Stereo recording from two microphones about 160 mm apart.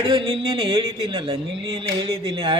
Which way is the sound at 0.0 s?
35° right (ahead or behind).